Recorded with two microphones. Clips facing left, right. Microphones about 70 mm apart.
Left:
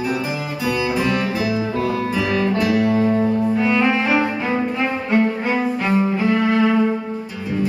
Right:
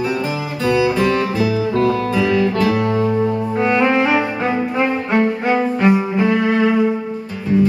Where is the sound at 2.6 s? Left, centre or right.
Right.